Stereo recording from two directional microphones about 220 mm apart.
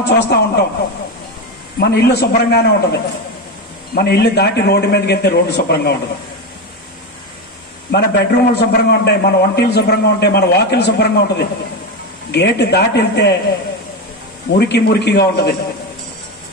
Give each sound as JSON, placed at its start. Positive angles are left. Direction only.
{"t": 0.0, "sound": "a man's voice", "side_deg": 50}
{"t": 1.8, "sound": "a man's voice", "side_deg": 50}
{"t": 7.9, "sound": "a man's voice", "side_deg": 50}
{"t": 14.6, "sound": "a man's voice", "side_deg": 50}